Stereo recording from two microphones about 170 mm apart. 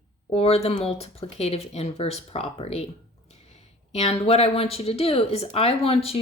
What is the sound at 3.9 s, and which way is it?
Speech, 35° left (ahead or behind).